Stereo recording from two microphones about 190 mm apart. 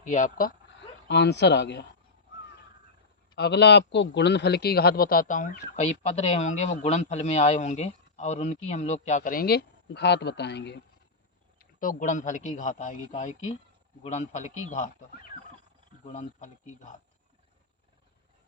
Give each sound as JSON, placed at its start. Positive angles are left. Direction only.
{"t": 0.0, "sound": "a man's voice", "side_deg": 40}
{"t": 1.0, "sound": "speech", "side_deg": 65}
{"t": 3.3, "sound": "a man's voice", "side_deg": 60}
{"t": 11.6, "sound": "a man's voice", "side_deg": 45}